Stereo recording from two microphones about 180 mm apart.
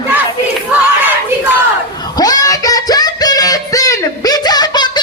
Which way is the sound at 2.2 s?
20° left (ahead or behind).